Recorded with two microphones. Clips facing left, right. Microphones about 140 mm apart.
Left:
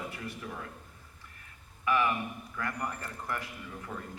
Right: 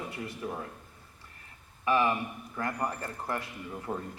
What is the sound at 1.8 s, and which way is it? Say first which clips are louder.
A man's voice: right 2 dB; 30° right (ahead or behind).